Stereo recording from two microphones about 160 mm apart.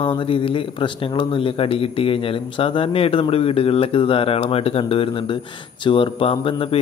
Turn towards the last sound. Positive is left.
turn(degrees=35)  # may be behind; listen again after turning